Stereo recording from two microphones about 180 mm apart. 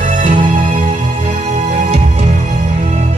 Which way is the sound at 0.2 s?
30° right (ahead or behind).